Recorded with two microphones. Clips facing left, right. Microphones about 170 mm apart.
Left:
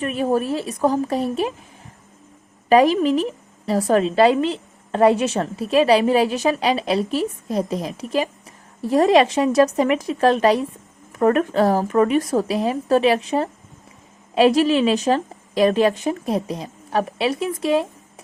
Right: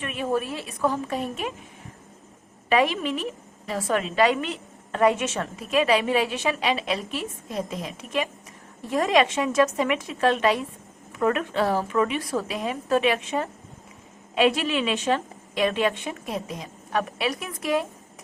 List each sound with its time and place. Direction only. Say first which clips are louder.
0.0 s a woman's voice: left 6 dB; 40° left (ahead or behind)
2.6 s a woman's voice: left 8 dB; 40° left (ahead or behind)